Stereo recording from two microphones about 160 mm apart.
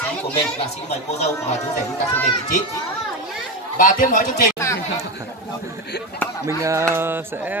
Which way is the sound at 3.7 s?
55° left (ahead or behind).